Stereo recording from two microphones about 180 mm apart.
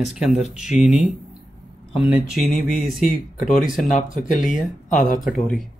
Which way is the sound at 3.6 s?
45° left (ahead or behind).